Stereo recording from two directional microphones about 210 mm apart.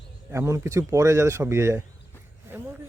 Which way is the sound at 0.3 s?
15° right (ahead or behind).